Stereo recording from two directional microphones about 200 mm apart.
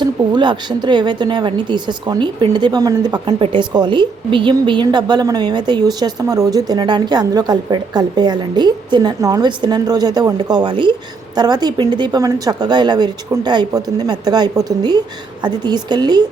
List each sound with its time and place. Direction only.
0.0 s a woman's voice: 20° right (ahead or behind)